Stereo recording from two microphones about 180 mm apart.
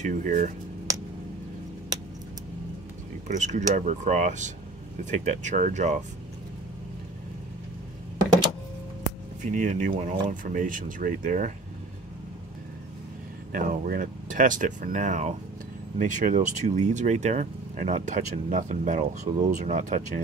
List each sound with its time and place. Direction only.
0.0 s speech: 45° right (ahead or behind)
3.3 s speech: 40° right (ahead or behind)
9.4 s speech: 45° right (ahead or behind)
13.5 s speech: 50° right (ahead or behind)